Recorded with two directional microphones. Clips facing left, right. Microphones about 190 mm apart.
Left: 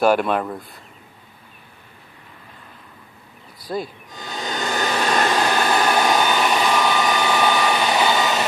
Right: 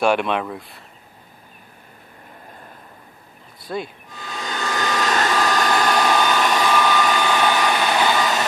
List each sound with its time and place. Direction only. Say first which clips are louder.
0.0 s speech: left 2 dB; 5° left (ahead or behind)
3.6 s speech: left 1 dB; 40° left (ahead or behind)
4.4 s vehicle: left 2 dB; 25° left (ahead or behind)
5.0 s vacuum cleaner: left 1 dB; 25° left (ahead or behind)
5.8 s vacuum cleaner: left 1 dB; 15° left (ahead or behind)